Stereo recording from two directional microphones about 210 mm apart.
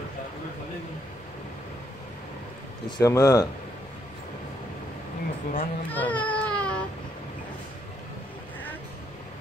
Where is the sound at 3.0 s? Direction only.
15° left (ahead or behind).